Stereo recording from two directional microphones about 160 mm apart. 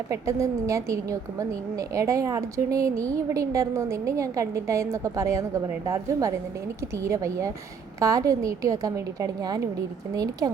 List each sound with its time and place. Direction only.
0.1 s a woman's voice: 20° right (ahead or behind)